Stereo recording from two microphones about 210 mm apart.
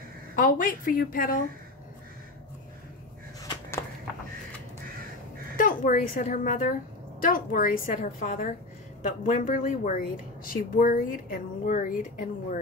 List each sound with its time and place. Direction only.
0.4 s speech: 40° left (ahead or behind)
5.6 s a woman's voice: 40° left (ahead or behind)